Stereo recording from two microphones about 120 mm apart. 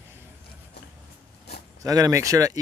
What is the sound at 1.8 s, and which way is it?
Speech, 30° right (ahead or behind).